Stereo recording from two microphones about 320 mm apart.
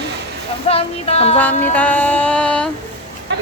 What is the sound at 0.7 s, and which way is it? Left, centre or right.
Speech, centre.